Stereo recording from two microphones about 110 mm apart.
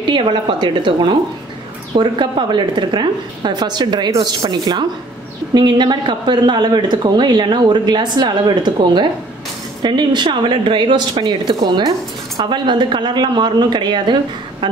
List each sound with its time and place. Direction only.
0.0 s a man's voice: 45° right (ahead or behind)